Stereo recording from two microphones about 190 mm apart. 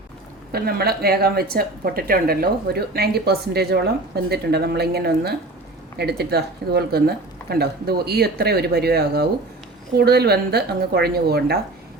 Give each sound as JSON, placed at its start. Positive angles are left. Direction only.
{"t": 0.5, "sound": "a woman's voice", "side_deg": -55}